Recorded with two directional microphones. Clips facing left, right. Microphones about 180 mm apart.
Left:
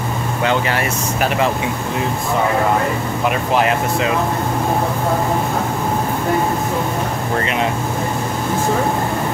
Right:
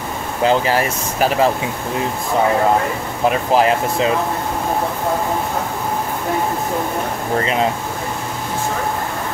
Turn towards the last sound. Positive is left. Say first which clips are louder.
# right 1 dB
turn(degrees=-30)  # may be behind; listen again after turning